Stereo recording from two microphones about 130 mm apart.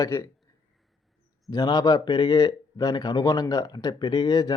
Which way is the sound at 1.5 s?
30° left (ahead or behind).